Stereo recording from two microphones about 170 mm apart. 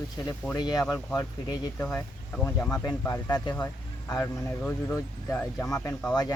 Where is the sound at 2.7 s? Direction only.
20° left (ahead or behind).